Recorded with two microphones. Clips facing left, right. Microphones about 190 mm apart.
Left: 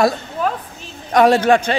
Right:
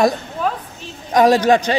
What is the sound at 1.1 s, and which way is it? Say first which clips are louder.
Speech: even; 15° right (ahead or behind).